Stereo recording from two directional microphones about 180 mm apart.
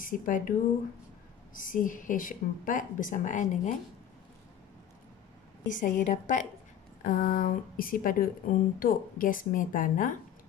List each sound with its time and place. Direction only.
0.0 s a woman's voice: 50° left (ahead or behind)
5.7 s a woman's voice: 45° left (ahead or behind)